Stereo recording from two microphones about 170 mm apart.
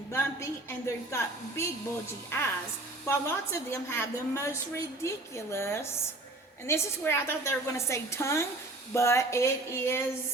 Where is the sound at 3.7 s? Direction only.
15° left (ahead or behind).